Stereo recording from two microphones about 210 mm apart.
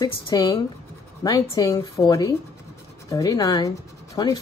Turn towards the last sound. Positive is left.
turn(degrees=15)  # may be behind; listen again after turning